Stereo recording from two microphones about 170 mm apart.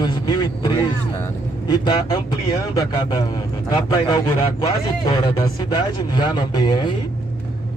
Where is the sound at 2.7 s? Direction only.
25° left (ahead or behind).